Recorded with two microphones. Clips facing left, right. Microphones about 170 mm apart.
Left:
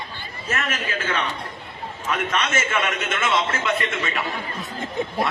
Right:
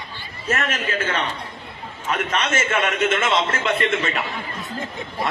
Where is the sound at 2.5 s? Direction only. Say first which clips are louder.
Right 3 dB; 50° right (ahead or behind).